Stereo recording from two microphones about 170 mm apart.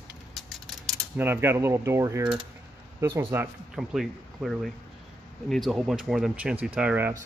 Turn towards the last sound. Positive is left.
turn(degrees=-10)  # may be behind; listen again after turning